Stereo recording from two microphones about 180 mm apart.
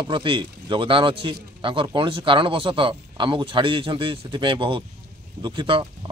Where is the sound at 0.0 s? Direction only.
30° right (ahead or behind).